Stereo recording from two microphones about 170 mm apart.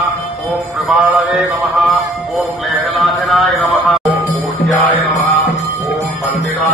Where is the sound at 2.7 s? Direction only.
Centre (ahead or behind).